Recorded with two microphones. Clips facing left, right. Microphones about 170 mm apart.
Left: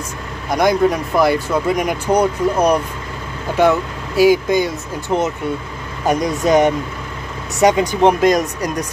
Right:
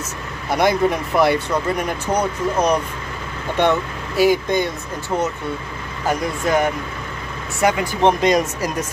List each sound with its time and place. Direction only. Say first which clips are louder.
0.5 s speech: left 2 dB; centre (ahead or behind)
5.1 s speech: left 4 dB; 20° left (ahead or behind)
8.2 s speech: left 2 dB; centre (ahead or behind)